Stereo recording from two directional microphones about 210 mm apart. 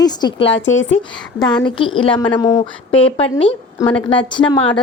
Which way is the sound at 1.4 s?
20° left (ahead or behind).